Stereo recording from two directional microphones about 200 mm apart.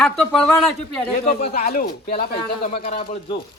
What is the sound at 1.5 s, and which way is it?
Speech, 45° left (ahead or behind).